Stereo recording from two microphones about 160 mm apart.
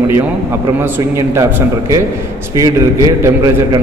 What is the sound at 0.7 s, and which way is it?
Speech, 15° right (ahead or behind).